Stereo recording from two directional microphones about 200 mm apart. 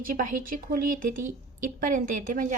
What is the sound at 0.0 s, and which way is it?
A woman's voice, 45° right (ahead or behind).